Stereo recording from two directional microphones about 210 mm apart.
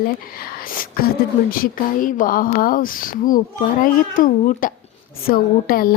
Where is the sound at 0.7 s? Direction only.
45° left (ahead or behind).